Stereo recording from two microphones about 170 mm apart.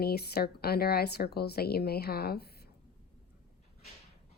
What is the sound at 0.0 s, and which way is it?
A woman's voice, 65° left (ahead or behind).